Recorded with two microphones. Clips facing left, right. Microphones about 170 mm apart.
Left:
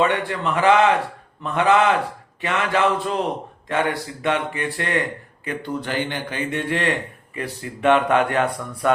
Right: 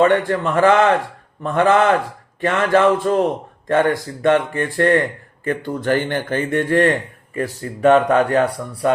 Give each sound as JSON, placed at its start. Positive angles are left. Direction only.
{"t": 0.0, "sound": "a man's voice", "side_deg": -50}